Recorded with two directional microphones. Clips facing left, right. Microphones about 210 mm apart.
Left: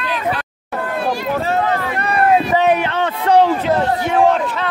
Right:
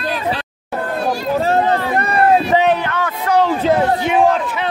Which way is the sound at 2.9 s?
30° left (ahead or behind).